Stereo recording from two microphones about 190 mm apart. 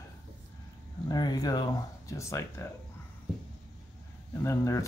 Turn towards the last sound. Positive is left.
turn(degrees=15)  # may be behind; listen again after turning